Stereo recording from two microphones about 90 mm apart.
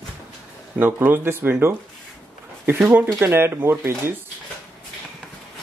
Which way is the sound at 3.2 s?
25° right (ahead or behind).